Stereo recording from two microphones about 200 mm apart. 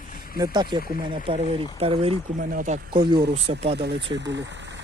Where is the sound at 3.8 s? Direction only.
55° right (ahead or behind).